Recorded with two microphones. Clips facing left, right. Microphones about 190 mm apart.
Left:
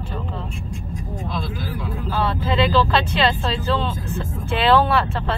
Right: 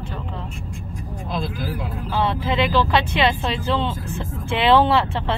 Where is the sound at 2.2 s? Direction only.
15° right (ahead or behind).